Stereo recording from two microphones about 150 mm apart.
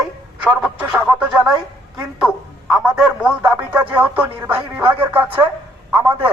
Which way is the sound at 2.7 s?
Centre (ahead or behind).